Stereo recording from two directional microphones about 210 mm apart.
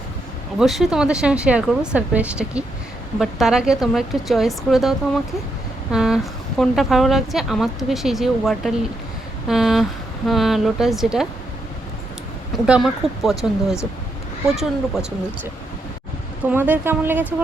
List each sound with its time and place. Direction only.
0.6 s speech: centre (ahead or behind)
12.6 s speech: 5° right (ahead or behind)
16.5 s speech: 10° right (ahead or behind)